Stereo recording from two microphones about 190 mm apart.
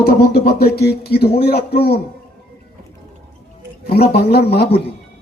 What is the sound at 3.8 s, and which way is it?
Speech, 55° left (ahead or behind).